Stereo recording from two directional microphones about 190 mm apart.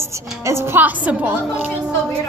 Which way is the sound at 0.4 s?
15° right (ahead or behind).